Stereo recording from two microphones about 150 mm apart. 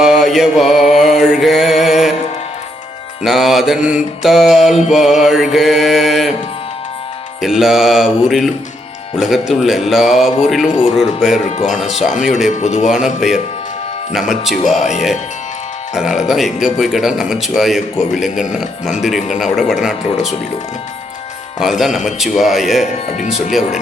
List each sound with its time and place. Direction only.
0.0 s mantra: 5° right (ahead or behind)
3.2 s mantra: centre (ahead or behind)
4.2 s speech: centre (ahead or behind)
7.4 s speech: centre (ahead or behind)
12.5 s speech: 50° left (ahead or behind)
13.1 s speech: centre (ahead or behind)
16.0 s speech: 5° right (ahead or behind)
21.6 s speech: centre (ahead or behind)
23.1 s speech: 55° left (ahead or behind)